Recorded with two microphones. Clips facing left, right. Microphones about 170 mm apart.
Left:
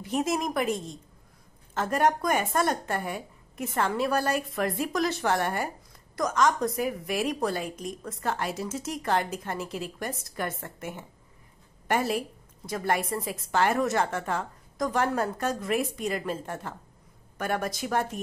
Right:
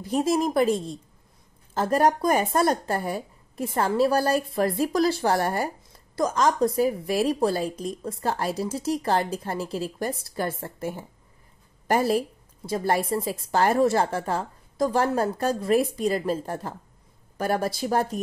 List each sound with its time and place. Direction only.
0.0 s a woman's voice: 30° right (ahead or behind)